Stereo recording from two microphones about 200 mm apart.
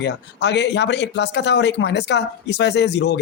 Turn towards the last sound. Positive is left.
turn(degrees=60)  # may be behind; listen again after turning